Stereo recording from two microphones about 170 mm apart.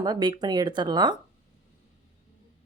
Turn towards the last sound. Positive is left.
turn(degrees=-25)  # may be behind; listen again after turning